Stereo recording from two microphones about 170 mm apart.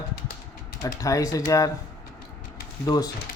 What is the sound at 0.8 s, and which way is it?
Speech, 20° left (ahead or behind).